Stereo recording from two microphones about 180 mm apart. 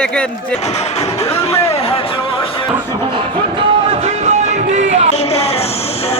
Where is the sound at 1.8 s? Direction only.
30° left (ahead or behind).